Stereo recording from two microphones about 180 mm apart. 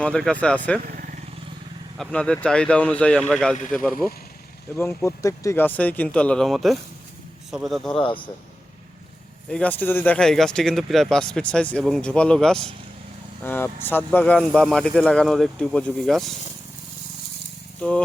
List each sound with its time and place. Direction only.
0.0 s speech: 5° left (ahead or behind)
0.9 s vehicle: 50° right (ahead or behind)
2.0 s speech: 5° left (ahead or behind)
4.8 s speech: 10° left (ahead or behind)
7.9 s a man's voice: 25° left (ahead or behind)
9.5 s speech: 5° left (ahead or behind)